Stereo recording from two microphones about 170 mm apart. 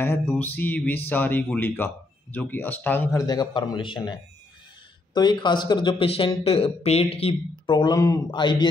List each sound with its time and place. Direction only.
0.3 s speech: 10° left (ahead or behind); by 4.1 s 30° left (ahead or behind)
5.1 s speech: 25° left (ahead or behind)